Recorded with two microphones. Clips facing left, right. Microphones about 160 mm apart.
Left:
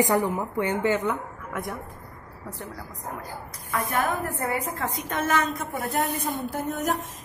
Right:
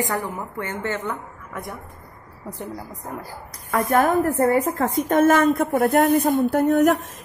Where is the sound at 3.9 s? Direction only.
45° right (ahead or behind).